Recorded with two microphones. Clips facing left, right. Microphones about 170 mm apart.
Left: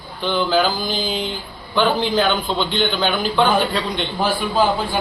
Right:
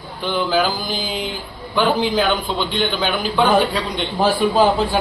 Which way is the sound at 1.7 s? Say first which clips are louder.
Even; 5° right (ahead or behind).